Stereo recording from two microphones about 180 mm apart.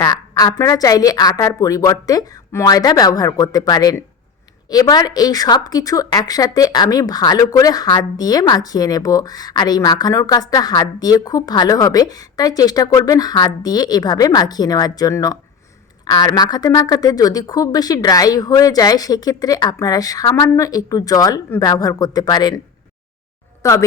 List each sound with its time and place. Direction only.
0.0 s a woman's voice: 20° left (ahead or behind)
23.6 s a woman's voice: 15° left (ahead or behind)